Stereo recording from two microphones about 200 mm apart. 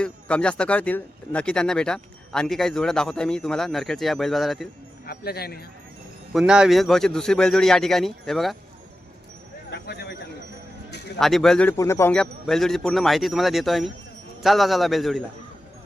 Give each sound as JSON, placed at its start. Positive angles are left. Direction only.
{"t": 0.0, "sound": "speech", "side_deg": 5}
{"t": 5.0, "sound": "speech", "side_deg": 50}
{"t": 6.3, "sound": "speech", "side_deg": -5}
{"t": 9.6, "sound": "a sound", "side_deg": 55}
{"t": 11.2, "sound": "speech", "side_deg": 0}
{"t": 11.8, "sound": "speech", "side_deg": 15}